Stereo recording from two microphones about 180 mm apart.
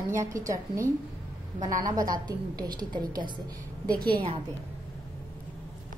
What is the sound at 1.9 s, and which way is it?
A woman's voice, 20° right (ahead or behind).